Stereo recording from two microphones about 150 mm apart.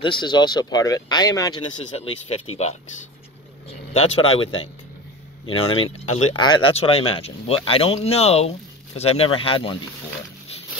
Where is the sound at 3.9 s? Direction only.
40° left (ahead or behind).